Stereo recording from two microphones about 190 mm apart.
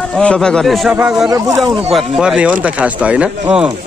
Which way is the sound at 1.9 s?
5° right (ahead or behind).